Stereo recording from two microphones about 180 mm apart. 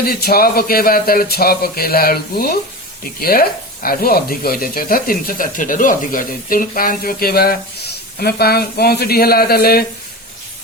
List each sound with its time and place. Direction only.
0.0 s speech: 60° left (ahead or behind)